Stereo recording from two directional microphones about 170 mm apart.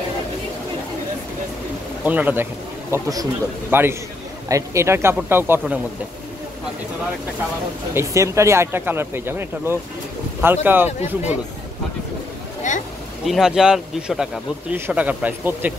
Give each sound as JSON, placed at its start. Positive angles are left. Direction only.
{"t": 2.0, "sound": "speech", "side_deg": -10}
{"t": 2.9, "sound": "a man's voice", "side_deg": -20}
{"t": 7.9, "sound": "speech", "side_deg": -15}
{"t": 12.7, "sound": "speech", "side_deg": 45}
{"t": 13.2, "sound": "speech", "side_deg": 0}